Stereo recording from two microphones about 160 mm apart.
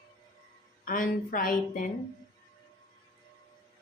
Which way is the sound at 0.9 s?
60° left (ahead or behind).